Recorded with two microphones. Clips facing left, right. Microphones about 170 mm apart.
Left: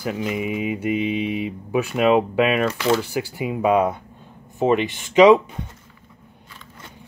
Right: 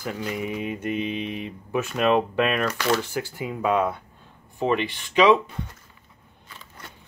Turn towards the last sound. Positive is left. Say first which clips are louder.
# left 6 dB
turn(degrees=20)  # may be behind; listen again after turning